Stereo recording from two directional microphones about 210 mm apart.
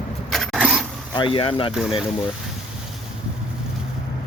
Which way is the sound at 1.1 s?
25° left (ahead or behind).